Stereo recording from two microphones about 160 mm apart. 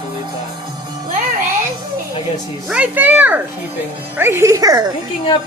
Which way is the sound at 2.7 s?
10° right (ahead or behind).